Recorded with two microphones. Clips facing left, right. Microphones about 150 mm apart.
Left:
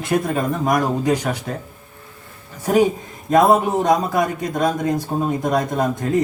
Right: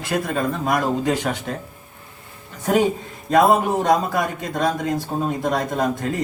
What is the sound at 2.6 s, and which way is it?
Speech, 10° left (ahead or behind).